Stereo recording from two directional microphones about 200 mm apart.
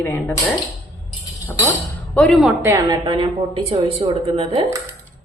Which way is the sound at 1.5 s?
15° left (ahead or behind).